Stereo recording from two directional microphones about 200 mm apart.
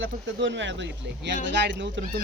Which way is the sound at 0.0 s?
65° right (ahead or behind).